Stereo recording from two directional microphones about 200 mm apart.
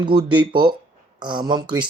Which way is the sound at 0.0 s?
25° right (ahead or behind).